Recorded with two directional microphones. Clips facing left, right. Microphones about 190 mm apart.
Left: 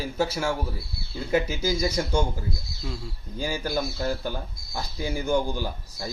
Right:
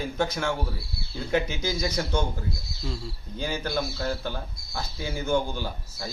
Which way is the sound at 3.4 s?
10° left (ahead or behind).